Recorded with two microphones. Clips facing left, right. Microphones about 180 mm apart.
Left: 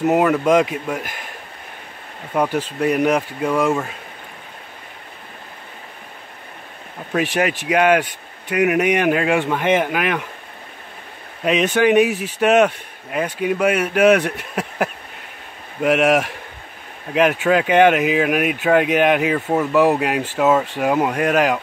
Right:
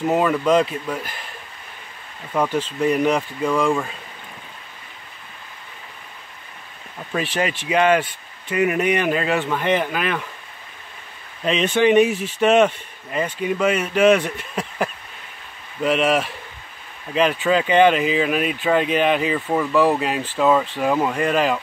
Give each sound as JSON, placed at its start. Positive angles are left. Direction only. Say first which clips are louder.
{"t": 0.0, "sound": "speech", "louder": "left 3 dB", "side_deg": 5}
{"t": 2.3, "sound": "speech", "louder": "left 1 dB", "side_deg": 10}
{"t": 7.2, "sound": "speech", "louder": "left 4 dB", "side_deg": 10}
{"t": 11.4, "sound": "speech", "louder": "left 1 dB", "side_deg": 10}